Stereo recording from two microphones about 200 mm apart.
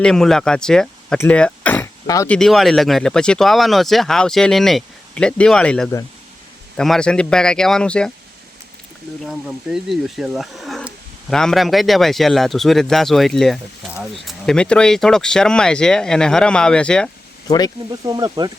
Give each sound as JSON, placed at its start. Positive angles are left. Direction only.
{"t": 0.0, "sound": "speech", "side_deg": 0}
{"t": 2.3, "sound": "speech", "side_deg": 0}
{"t": 9.2, "sound": "speech", "side_deg": 0}
{"t": 18.0, "sound": "speech", "side_deg": -20}